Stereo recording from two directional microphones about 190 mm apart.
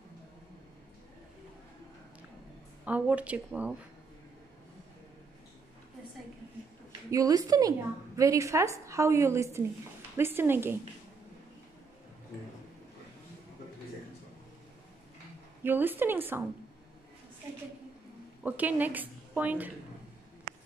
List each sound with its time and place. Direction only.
2.8 s a woman's voice: 5° right (ahead or behind)
7.1 s a woman's voice: 20° right (ahead or behind)
15.6 s a woman's voice: 10° right (ahead or behind)
18.4 s a woman's voice: 10° right (ahead or behind)